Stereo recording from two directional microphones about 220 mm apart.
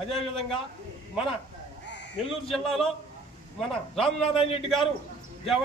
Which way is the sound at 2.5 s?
Centre (ahead or behind).